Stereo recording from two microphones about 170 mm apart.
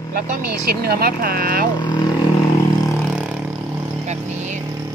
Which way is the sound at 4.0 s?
45° right (ahead or behind).